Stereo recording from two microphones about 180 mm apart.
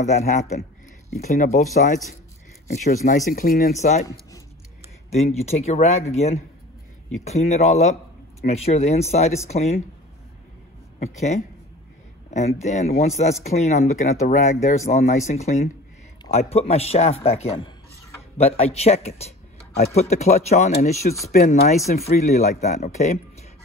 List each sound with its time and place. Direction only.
0.0 s speech: 40° left (ahead or behind)
5.1 s speech: 35° left (ahead or behind)
11.0 s speech: 40° left (ahead or behind)